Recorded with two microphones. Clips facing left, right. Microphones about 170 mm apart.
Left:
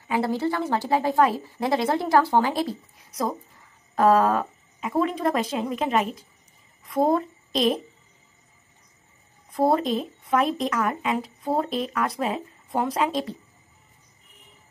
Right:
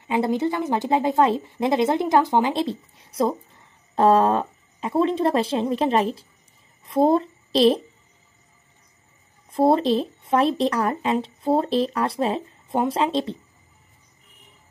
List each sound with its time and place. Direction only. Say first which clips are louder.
0.0 s speech: right 2 dB; 20° right (ahead or behind)
9.5 s speech: right 3 dB; 25° right (ahead or behind)